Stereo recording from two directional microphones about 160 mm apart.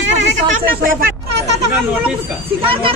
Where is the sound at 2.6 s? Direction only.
35° right (ahead or behind).